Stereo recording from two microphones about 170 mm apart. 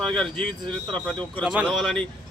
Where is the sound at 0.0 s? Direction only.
5° left (ahead or behind).